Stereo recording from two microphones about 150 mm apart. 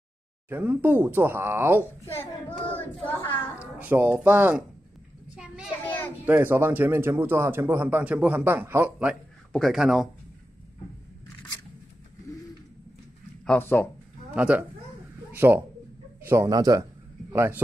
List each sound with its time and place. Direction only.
0.5 s speech: 10° right (ahead or behind)
2.1 s speech: 15° left (ahead or behind)
3.8 s speech: 10° right (ahead or behind)
5.3 s a sound: 5° right (ahead or behind)
5.9 s children playing: 10° left (ahead or behind)
6.2 s speech: 15° right (ahead or behind)
9.1 s speech: centre (ahead or behind)
13.5 s speech: 15° left (ahead or behind)
14.3 s a man's voice: 5° right (ahead or behind); by 16.8 s 25° right (ahead or behind)
17.3 s a man's voice: 15° right (ahead or behind)